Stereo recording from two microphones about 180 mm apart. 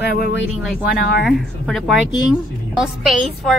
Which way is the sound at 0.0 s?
60° left (ahead or behind).